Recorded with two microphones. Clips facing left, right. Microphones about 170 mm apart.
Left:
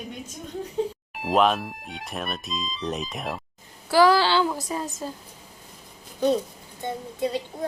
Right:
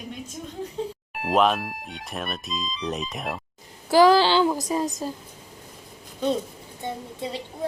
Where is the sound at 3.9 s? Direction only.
20° right (ahead or behind).